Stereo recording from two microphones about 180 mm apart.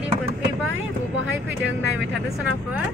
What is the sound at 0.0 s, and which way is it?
Vehicle, 10° right (ahead or behind).